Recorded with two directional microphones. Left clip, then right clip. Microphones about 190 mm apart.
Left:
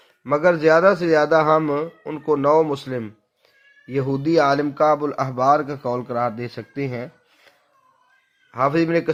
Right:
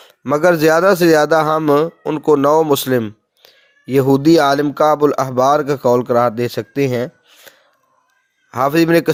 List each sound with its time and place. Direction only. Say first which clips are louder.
0.0 s a man's voice: right 4 dB; 45° right (ahead or behind)